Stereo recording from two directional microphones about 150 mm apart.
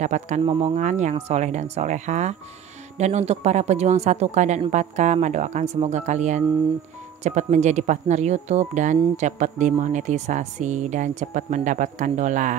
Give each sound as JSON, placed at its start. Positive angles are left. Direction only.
{"t": 0.0, "sound": "speech", "side_deg": -50}
{"t": 0.4, "sound": "speech", "side_deg": -35}
{"t": 0.7, "sound": "speech", "side_deg": -55}